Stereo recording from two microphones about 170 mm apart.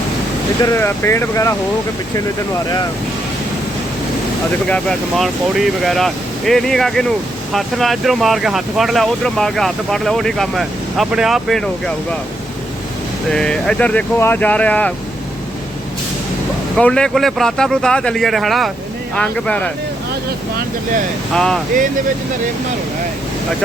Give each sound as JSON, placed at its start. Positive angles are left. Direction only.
{"t": 0.6, "sound": "speech", "side_deg": 15}
{"t": 4.7, "sound": "speech", "side_deg": 0}
{"t": 13.3, "sound": "speech", "side_deg": 5}
{"t": 16.7, "sound": "speech", "side_deg": 5}
{"t": 21.3, "sound": "speech", "side_deg": 5}